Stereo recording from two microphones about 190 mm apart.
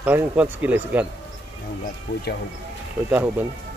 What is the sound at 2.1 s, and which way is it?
Speech, 60° left (ahead or behind).